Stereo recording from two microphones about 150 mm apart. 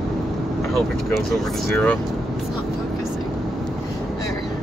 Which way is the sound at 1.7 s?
10° left (ahead or behind).